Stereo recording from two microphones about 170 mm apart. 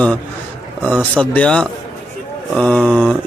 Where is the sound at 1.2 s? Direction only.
5° left (ahead or behind).